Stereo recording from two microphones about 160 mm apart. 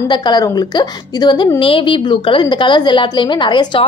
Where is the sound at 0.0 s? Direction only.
25° left (ahead or behind).